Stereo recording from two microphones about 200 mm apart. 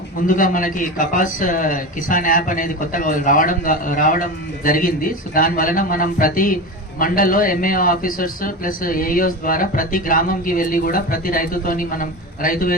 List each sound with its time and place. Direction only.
0.3 s speech: 40° left (ahead or behind)